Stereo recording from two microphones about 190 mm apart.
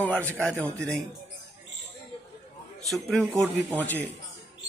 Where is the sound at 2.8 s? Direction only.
Centre (ahead or behind).